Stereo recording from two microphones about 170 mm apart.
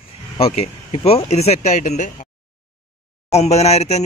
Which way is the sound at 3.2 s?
40° left (ahead or behind).